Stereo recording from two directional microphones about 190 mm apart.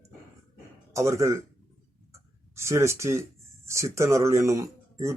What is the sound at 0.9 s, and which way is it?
Speech, 15° right (ahead or behind).